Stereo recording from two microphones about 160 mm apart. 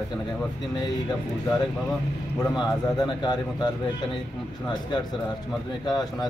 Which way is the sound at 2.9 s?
25° left (ahead or behind).